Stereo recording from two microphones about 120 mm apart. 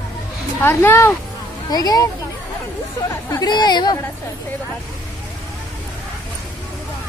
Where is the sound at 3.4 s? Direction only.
35° left (ahead or behind).